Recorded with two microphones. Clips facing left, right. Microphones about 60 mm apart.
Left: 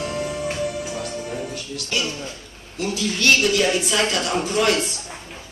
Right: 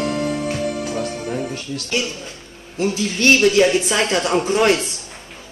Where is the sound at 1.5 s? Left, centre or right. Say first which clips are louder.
Right 3 dB; right.